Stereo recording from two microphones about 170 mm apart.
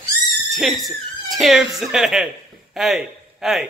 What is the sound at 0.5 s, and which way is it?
A man's voice, centre (ahead or behind).